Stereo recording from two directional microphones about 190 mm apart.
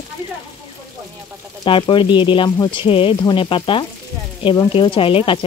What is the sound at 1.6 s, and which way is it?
Speech, 25° left (ahead or behind).